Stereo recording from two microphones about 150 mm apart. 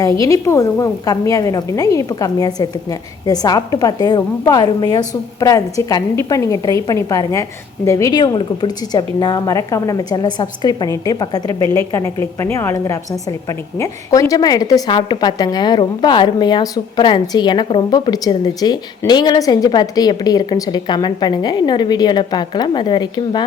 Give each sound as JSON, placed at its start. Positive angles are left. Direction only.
{"t": 0.2, "sound": "a woman's voice", "side_deg": 20}